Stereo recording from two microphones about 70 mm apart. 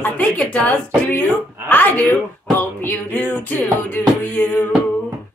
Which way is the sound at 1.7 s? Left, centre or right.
Left.